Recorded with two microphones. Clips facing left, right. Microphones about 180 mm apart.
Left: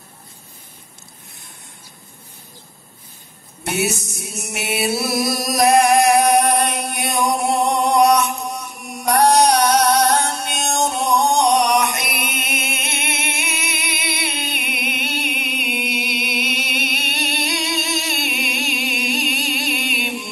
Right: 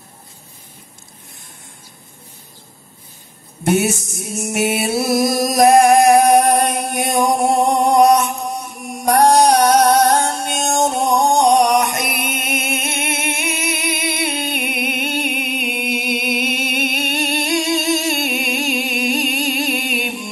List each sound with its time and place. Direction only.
3.6 s music: 45° right (ahead or behind)
4.9 s chant: 45° right (ahead or behind)
7.4 s music: 45° right (ahead or behind)